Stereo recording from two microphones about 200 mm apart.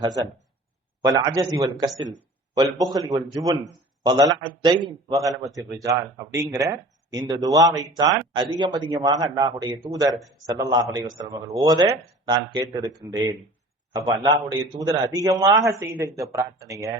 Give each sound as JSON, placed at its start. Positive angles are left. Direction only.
{"t": 1.0, "sound": "speech", "side_deg": -20}
{"t": 2.7, "sound": "speech", "side_deg": -20}
{"t": 13.9, "sound": "a man's voice", "side_deg": -20}